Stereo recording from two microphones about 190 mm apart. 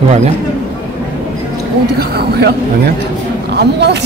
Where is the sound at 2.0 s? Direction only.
55° right (ahead or behind).